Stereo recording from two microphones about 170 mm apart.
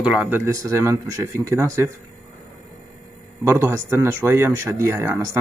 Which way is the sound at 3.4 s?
15° right (ahead or behind).